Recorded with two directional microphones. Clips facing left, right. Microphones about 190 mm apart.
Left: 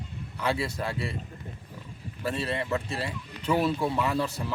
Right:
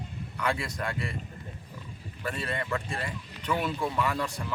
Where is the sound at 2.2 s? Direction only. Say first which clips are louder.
Left 3 dB; 25° left (ahead or behind).